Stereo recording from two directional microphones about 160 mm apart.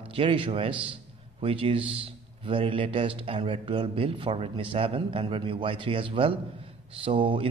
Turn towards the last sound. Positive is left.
turn(degrees=-35)  # may be behind; listen again after turning